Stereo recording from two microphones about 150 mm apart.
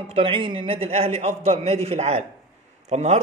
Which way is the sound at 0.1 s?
35° right (ahead or behind).